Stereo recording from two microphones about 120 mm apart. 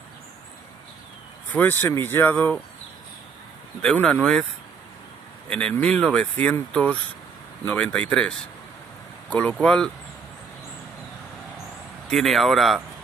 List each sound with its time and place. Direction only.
1.5 s speech: 15° left (ahead or behind)
3.8 s speech: 5° left (ahead or behind)
5.5 s speech: 10° left (ahead or behind)
12.1 s speech: centre (ahead or behind)